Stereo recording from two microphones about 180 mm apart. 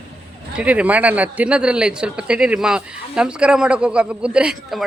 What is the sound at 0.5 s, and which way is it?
A man's voice, 5° right (ahead or behind).